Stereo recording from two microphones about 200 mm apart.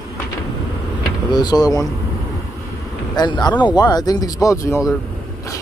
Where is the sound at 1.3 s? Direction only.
20° left (ahead or behind).